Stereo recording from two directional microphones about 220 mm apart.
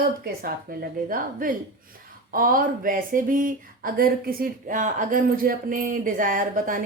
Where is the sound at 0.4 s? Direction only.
40° right (ahead or behind).